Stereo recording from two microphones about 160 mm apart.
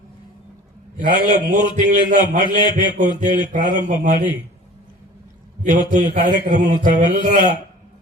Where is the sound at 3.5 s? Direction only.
55° right (ahead or behind).